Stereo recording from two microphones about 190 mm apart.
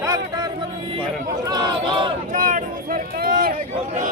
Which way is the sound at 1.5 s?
20° right (ahead or behind).